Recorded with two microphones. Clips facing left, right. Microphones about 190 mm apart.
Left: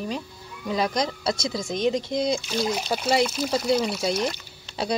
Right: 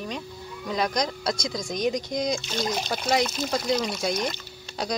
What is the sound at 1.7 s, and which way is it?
Speech, 25° left (ahead or behind).